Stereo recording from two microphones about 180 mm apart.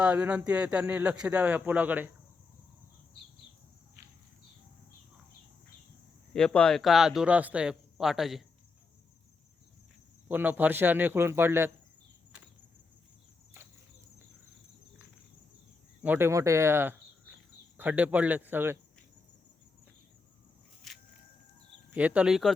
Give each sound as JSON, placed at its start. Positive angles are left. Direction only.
{"t": 0.0, "sound": "speech", "side_deg": -5}
{"t": 6.3, "sound": "speech", "side_deg": 5}
{"t": 10.2, "sound": "speech", "side_deg": -10}
{"t": 16.0, "sound": "speech", "side_deg": -10}
{"t": 20.9, "sound": "a sound", "side_deg": 0}
{"t": 21.8, "sound": "speech", "side_deg": -10}